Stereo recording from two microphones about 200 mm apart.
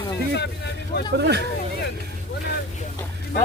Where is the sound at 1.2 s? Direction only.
55° right (ahead or behind).